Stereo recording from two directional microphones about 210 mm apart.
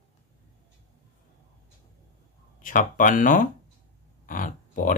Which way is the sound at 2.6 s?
40° left (ahead or behind).